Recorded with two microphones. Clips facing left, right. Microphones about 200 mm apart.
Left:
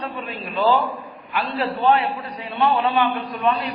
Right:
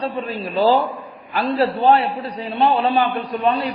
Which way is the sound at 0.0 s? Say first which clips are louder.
Right 6 dB; 35° right (ahead or behind).